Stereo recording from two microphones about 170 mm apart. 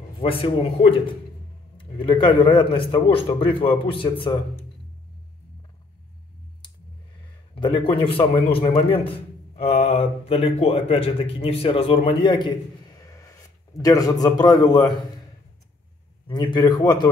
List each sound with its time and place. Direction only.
0.2 s a man's voice: 30° left (ahead or behind)
7.5 s a man's voice: 30° left (ahead or behind)
16.3 s a man's voice: 25° left (ahead or behind)